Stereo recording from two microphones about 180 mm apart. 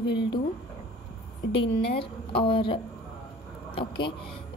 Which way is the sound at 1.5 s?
30° left (ahead or behind).